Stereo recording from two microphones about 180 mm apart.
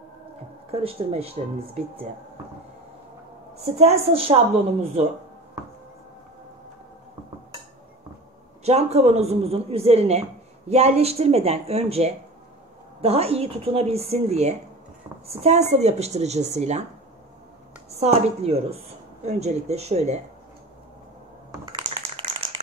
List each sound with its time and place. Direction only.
0.7 s a woman's voice: 30° right (ahead or behind)
3.6 s a woman's voice: 35° right (ahead or behind)
8.6 s a woman's voice: 35° right (ahead or behind)
17.9 s a woman's voice: 35° right (ahead or behind)
21.7 s clapping: 25° right (ahead or behind)